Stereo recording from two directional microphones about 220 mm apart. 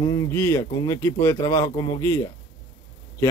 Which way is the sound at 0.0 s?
15° left (ahead or behind).